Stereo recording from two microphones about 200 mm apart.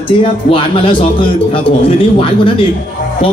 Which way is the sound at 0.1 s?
25° left (ahead or behind).